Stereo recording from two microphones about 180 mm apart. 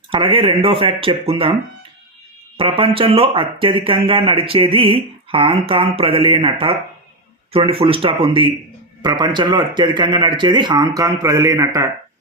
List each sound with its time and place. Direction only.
0.1 s speech: 30° right (ahead or behind)
2.6 s speech: 30° right (ahead or behind)